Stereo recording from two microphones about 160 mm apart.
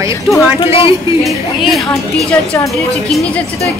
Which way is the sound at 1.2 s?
Centre (ahead or behind).